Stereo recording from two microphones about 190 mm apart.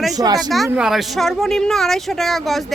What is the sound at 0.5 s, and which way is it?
Speech, centre (ahead or behind).